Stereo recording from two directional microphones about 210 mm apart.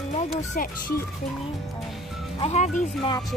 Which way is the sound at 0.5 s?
40° left (ahead or behind).